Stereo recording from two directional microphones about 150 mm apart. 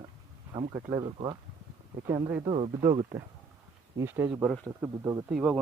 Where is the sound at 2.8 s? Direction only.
25° right (ahead or behind).